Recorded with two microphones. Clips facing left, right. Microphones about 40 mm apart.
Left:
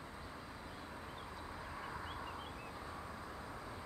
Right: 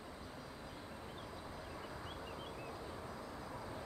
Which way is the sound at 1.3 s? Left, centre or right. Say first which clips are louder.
Left 1 dB; left.